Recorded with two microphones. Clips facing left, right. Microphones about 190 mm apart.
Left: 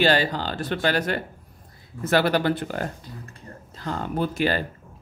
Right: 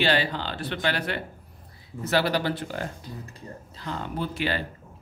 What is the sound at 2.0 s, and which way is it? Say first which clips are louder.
Speech: left 4 dB; 55° left (ahead or behind).